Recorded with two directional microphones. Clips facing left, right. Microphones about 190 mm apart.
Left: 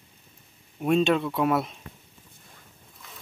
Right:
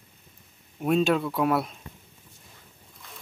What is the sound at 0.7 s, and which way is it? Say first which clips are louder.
Speech: left 1 dB; centre (ahead or behind).